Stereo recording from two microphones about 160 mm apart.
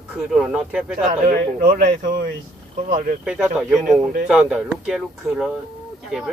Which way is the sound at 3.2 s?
5° right (ahead or behind).